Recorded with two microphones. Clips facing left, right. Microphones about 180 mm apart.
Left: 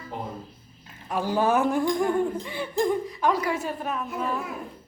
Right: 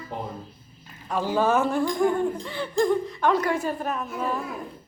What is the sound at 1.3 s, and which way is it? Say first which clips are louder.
A woman's voice: even; 15° left (ahead or behind).